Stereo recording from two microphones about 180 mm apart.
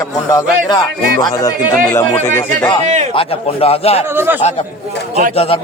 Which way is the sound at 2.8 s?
40° right (ahead or behind).